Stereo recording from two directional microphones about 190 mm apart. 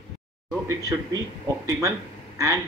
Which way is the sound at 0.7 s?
15° right (ahead or behind).